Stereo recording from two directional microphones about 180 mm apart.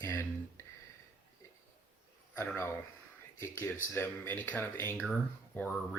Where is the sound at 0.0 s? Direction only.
15° left (ahead or behind).